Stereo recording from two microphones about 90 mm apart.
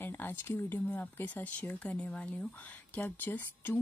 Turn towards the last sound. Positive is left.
turn(degrees=20)  # may be behind; listen again after turning